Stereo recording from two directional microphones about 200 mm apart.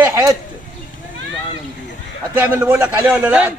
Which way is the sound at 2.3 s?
10° right (ahead or behind).